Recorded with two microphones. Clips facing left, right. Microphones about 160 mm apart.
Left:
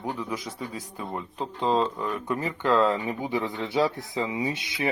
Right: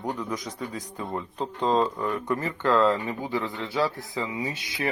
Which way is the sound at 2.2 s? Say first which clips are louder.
Left 1 dB; 15° left (ahead or behind).